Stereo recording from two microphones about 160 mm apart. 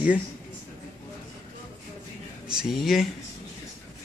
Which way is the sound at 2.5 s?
5° right (ahead or behind).